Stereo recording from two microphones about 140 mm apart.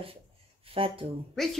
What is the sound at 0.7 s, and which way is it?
Speech, 40° right (ahead or behind).